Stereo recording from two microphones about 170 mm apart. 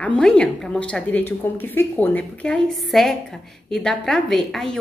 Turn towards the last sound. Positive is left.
turn(degrees=5)  # may be behind; listen again after turning